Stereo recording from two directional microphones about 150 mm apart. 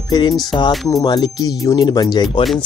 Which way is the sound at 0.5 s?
25° left (ahead or behind).